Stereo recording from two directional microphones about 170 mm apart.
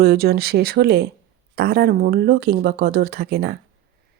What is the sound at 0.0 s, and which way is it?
Speech, 65° right (ahead or behind).